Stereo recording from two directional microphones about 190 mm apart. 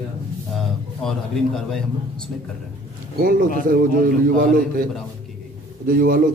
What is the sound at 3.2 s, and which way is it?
A man's voice, 50° right (ahead or behind).